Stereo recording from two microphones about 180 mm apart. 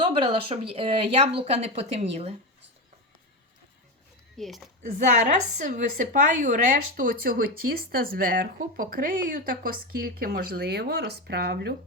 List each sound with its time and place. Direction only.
0.0 s speech: 30° right (ahead or behind)
4.4 s speech: centre (ahead or behind)
4.8 s a woman's voice: 45° right (ahead or behind); by 11.7 s 65° right (ahead or behind)